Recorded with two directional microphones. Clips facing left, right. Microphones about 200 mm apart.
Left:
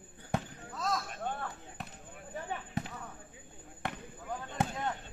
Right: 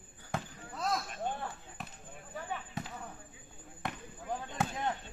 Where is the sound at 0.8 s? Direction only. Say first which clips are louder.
Even; 15° right (ahead or behind).